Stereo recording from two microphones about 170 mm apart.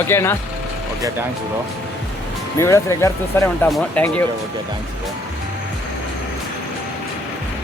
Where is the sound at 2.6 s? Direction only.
15° left (ahead or behind).